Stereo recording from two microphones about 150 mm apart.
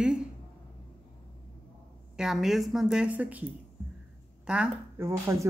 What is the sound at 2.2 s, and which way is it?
A woman's voice, centre (ahead or behind).